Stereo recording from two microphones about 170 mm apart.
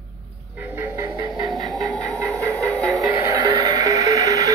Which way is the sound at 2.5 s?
10° left (ahead or behind).